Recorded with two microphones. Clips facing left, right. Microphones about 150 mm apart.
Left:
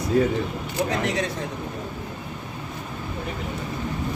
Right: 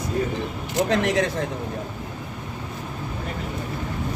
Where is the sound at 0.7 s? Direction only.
90° right.